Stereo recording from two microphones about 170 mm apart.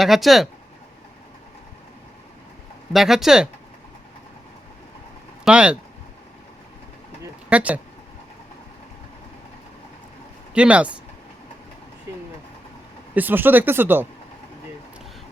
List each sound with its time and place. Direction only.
0.0 s speech: centre (ahead or behind)
2.9 s speech: centre (ahead or behind)
5.5 s speech: 5° right (ahead or behind)
7.5 s speech: 10° right (ahead or behind)
10.5 s speech: 5° right (ahead or behind)
13.1 s speech: 10° right (ahead or behind)